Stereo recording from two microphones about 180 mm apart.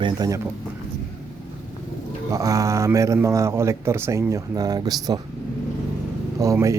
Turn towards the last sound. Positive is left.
turn(degrees=-15)  # may be behind; listen again after turning